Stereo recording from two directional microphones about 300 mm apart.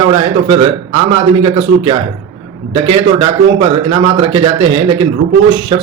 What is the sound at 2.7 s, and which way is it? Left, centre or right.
Speech, centre.